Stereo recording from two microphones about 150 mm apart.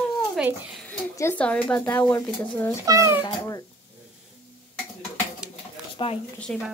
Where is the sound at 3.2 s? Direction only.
25° left (ahead or behind).